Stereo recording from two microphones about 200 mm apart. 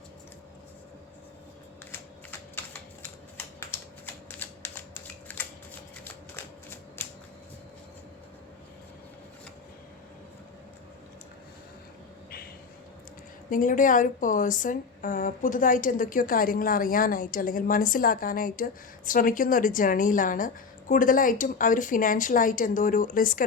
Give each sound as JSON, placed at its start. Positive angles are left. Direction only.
{"t": 3.3, "sound": "typing", "side_deg": 10}
{"t": 5.3, "sound": "shuffling cards", "side_deg": 10}
{"t": 6.1, "sound": "typewriter", "side_deg": 10}
{"t": 13.5, "sound": "a woman's voice", "side_deg": 40}